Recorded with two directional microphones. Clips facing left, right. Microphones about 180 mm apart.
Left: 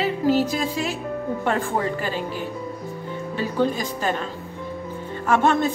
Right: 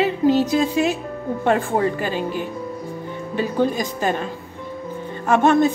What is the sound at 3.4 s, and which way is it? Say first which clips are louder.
Speech: right 3 dB; 15° right (ahead or behind).